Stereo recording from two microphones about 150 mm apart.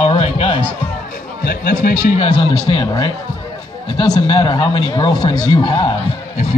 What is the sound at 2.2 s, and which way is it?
Speech, 40° left (ahead or behind).